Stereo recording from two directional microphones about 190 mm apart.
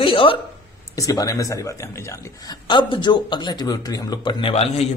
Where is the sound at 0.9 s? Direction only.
20° left (ahead or behind).